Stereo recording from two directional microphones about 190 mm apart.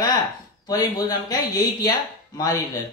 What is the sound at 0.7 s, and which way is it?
Speech, 20° left (ahead or behind).